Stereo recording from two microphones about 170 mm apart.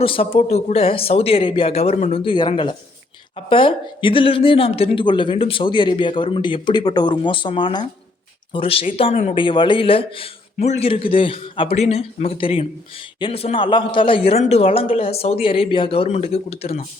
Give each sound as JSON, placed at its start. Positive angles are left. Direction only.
{"t": 0.0, "sound": "a man's voice", "side_deg": 35}